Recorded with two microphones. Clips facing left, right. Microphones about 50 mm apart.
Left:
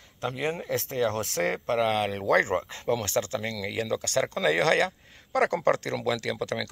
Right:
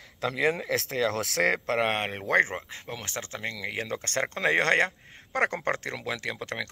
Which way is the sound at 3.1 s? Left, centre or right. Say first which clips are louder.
Left 6 dB; right.